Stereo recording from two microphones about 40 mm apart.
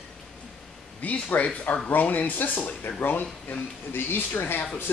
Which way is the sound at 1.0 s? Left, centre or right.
Left.